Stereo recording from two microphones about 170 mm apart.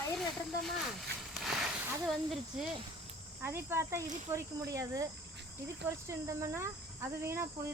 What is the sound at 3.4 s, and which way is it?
Speech, 15° right (ahead or behind).